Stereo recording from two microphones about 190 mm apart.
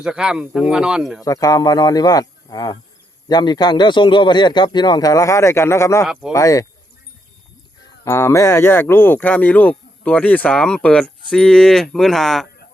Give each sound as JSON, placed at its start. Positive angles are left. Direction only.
{"t": 0.0, "sound": "speech", "side_deg": -5}
{"t": 1.2, "sound": "a man's voice", "side_deg": 20}
{"t": 8.0, "sound": "speech", "side_deg": 15}